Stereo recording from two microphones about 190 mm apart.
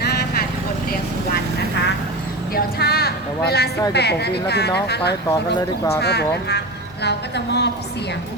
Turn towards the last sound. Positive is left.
turn(degrees=60)  # may be behind; listen again after turning